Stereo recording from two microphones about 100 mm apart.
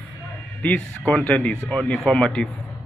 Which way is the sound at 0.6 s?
15° left (ahead or behind).